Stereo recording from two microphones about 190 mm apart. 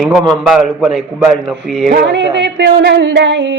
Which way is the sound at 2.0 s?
70° right (ahead or behind).